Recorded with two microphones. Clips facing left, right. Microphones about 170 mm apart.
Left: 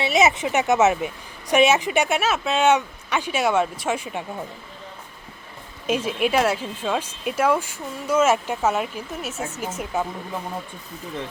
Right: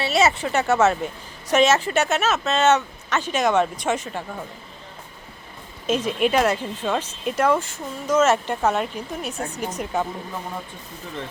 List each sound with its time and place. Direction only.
0.0 s speech: 15° left (ahead or behind)
5.8 s speech: 10° left (ahead or behind)